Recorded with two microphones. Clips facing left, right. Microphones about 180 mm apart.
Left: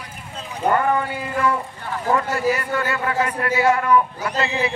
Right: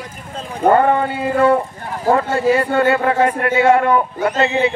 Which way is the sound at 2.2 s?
30° right (ahead or behind).